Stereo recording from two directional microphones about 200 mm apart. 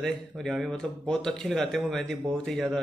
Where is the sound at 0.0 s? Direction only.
Centre (ahead or behind).